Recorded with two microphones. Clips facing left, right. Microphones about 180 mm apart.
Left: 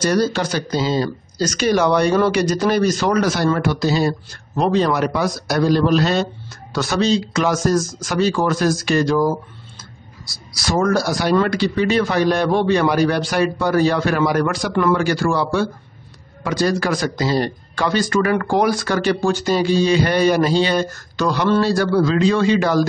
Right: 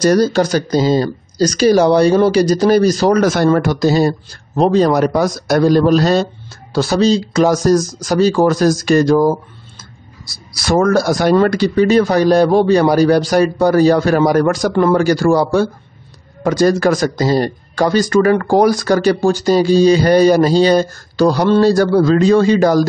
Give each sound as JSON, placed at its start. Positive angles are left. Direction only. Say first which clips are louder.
{"t": 0.0, "sound": "a man's voice", "louder": "right 6 dB", "side_deg": -40}
{"t": 9.8, "sound": "a sound", "louder": "right 1 dB", "side_deg": -55}
{"t": 11.3, "sound": "a man's voice", "louder": "right 4 dB", "side_deg": -45}